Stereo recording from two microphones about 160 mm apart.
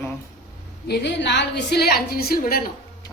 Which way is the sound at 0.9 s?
90° left.